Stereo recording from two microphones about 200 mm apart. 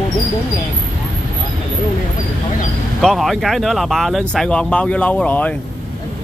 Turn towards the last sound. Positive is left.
turn(degrees=5)  # may be behind; listen again after turning